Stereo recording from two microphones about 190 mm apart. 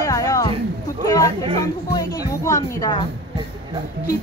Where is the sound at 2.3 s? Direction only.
15° left (ahead or behind).